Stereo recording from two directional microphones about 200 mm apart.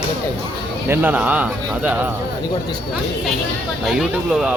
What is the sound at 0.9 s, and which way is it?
Speech, 10° right (ahead or behind).